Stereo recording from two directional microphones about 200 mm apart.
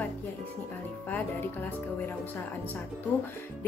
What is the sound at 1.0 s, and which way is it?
Speech, 10° left (ahead or behind).